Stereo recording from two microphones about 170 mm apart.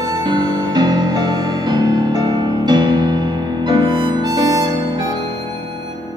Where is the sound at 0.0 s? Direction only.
25° right (ahead or behind).